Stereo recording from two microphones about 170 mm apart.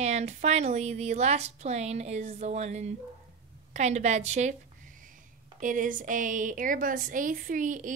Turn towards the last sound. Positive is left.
turn(degrees=-50)  # may be behind; listen again after turning